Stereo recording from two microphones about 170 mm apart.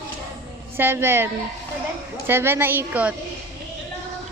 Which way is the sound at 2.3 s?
15° right (ahead or behind).